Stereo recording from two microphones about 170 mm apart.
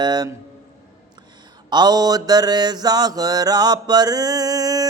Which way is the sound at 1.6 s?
25° right (ahead or behind).